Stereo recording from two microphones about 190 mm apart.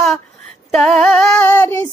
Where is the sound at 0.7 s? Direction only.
Centre (ahead or behind).